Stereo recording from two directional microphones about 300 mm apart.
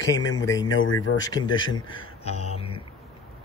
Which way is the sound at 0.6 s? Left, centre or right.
Left.